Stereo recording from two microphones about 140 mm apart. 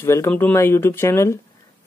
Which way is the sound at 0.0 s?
20° left (ahead or behind).